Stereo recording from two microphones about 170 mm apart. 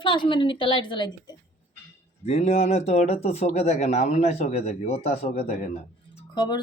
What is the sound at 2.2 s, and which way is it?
Speech, 40° left (ahead or behind).